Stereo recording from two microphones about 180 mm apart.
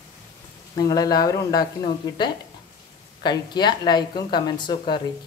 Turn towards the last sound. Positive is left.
turn(degrees=25)  # may be behind; listen again after turning